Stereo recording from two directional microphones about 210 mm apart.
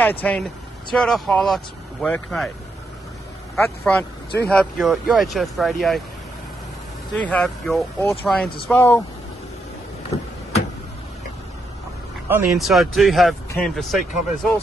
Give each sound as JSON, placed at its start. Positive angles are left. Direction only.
{"t": 0.0, "sound": "speech", "side_deg": 10}
{"t": 3.5, "sound": "speech", "side_deg": 5}
{"t": 7.2, "sound": "speech", "side_deg": 5}
{"t": 12.3, "sound": "speech", "side_deg": -10}